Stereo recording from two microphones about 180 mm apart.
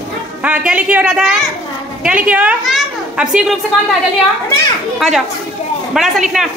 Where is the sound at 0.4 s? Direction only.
10° right (ahead or behind).